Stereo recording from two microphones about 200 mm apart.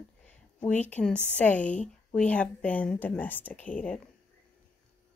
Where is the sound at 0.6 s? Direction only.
5° left (ahead or behind).